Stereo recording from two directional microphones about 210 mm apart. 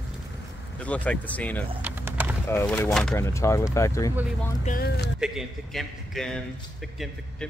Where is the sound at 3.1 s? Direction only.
15° left (ahead or behind).